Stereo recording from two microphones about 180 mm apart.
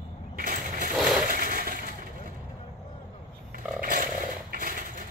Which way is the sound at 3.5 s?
50° right (ahead or behind).